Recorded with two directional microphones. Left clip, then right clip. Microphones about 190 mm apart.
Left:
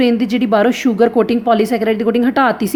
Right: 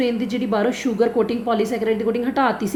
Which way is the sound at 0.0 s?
45° left (ahead or behind).